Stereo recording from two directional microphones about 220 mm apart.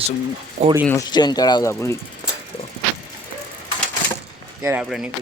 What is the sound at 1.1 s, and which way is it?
Speech, 20° left (ahead or behind).